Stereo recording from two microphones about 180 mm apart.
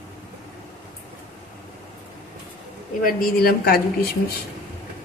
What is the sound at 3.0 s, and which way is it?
Speech, 55° left (ahead or behind).